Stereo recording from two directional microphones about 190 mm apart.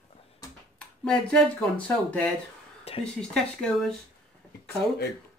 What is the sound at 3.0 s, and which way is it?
Speech, 5° left (ahead or behind).